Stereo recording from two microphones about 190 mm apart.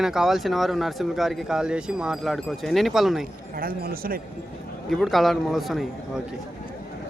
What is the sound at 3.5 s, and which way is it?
Speech, 50° right (ahead or behind).